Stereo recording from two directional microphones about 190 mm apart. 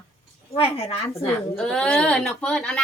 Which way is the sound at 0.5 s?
30° left (ahead or behind).